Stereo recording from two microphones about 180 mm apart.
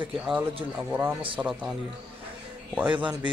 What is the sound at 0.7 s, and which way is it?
A man's voice, 10° right (ahead or behind).